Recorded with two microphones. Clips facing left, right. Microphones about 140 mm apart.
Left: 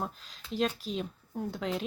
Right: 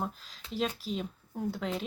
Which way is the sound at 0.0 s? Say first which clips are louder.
Right 1 dB; centre (ahead or behind).